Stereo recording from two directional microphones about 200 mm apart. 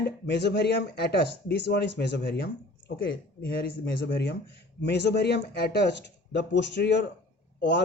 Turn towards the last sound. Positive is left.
turn(degrees=60)  # may be behind; listen again after turning